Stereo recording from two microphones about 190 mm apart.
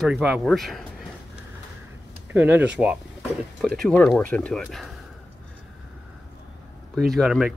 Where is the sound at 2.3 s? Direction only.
5° right (ahead or behind).